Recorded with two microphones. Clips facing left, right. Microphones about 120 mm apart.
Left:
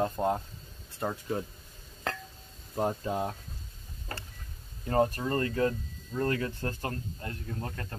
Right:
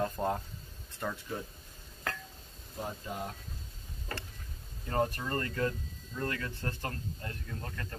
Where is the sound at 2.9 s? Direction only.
40° left (ahead or behind).